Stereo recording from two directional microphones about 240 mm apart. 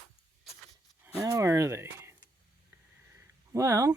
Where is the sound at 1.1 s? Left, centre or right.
Centre.